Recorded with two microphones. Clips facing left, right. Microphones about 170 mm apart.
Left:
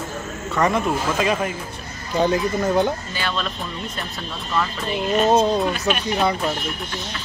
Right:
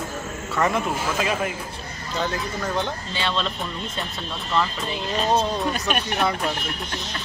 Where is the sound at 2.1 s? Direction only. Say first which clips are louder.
Left 8 dB; 15° left (ahead or behind).